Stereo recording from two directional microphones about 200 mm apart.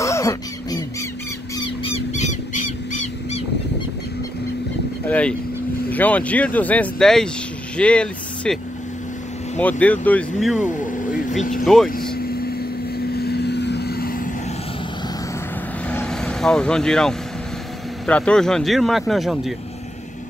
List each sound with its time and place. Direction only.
0.0 s a sound: 15° left (ahead or behind)
1.8 s a sound: 30° left (ahead or behind)
5.0 s vehicle: 5° left (ahead or behind)
5.9 s speech: 10° left (ahead or behind)
9.6 s speech: 5° left (ahead or behind)
10.6 s speech: 40° left (ahead or behind)
11.6 s speech: centre (ahead or behind)
11.9 s vehicle: 50° left (ahead or behind)
15.9 s vehicle: 5° left (ahead or behind)
18.0 s speech: 5° left (ahead or behind)